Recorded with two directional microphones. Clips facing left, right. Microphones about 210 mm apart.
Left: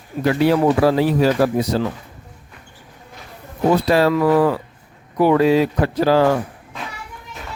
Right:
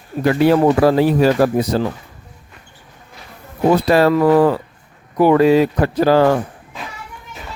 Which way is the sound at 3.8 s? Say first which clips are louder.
Right 4 dB; 50° right (ahead or behind).